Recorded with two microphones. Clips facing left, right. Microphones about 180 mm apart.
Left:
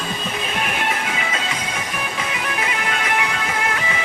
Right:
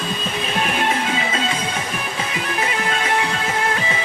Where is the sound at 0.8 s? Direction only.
30° right (ahead or behind).